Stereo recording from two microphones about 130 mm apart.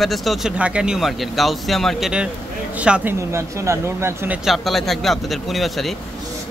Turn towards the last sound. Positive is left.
turn(degrees=0)  # may be behind; listen again after turning